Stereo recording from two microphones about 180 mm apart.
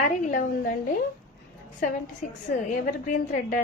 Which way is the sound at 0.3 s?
50° left (ahead or behind).